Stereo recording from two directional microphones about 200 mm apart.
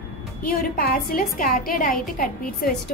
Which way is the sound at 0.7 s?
45° left (ahead or behind).